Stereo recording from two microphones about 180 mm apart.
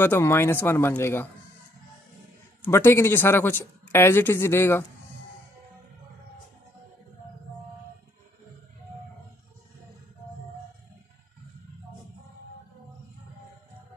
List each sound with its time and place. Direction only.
0.0 s speech: 15° left (ahead or behind)
2.6 s speech: 15° left (ahead or behind)